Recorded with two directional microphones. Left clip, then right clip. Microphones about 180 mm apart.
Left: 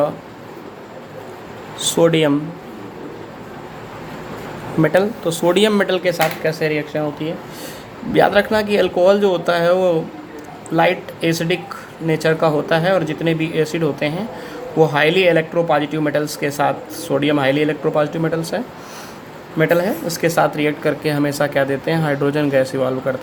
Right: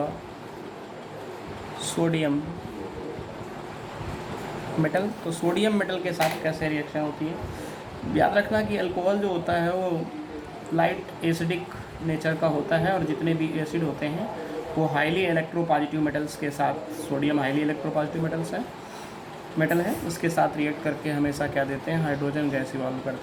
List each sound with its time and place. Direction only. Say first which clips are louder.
1.8 s speech: left 12 dB; 55° left (ahead or behind)
4.8 s speech: left 11 dB; 60° left (ahead or behind)
8.1 s speech: left 8 dB; 60° left (ahead or behind)
10.8 s speech: left 9 dB; 60° left (ahead or behind)